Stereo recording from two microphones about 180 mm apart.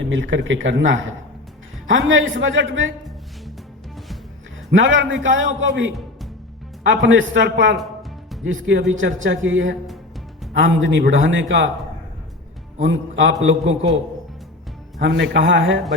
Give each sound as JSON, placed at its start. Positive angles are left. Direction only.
{"t": 0.0, "sound": "speech", "side_deg": -90}
{"t": 4.7, "sound": "speech", "side_deg": -90}
{"t": 12.8, "sound": "speech", "side_deg": -90}
{"t": 14.9, "sound": "speech", "side_deg": -80}